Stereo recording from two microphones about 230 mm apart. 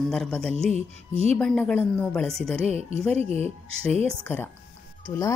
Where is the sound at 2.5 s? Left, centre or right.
Right.